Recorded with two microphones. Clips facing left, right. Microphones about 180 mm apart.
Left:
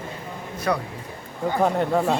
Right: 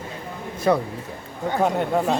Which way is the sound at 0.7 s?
25° right (ahead or behind).